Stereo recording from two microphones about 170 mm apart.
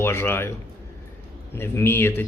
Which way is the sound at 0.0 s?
15° left (ahead or behind).